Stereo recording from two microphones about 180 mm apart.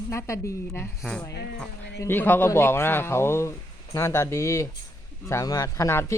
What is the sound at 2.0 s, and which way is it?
Speech, 10° left (ahead or behind).